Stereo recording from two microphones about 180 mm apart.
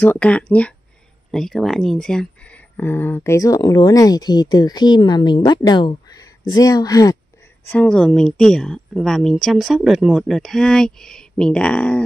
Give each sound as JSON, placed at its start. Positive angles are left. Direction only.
{"t": 0.0, "sound": "speech", "side_deg": 10}
{"t": 7.6, "sound": "speech", "side_deg": 10}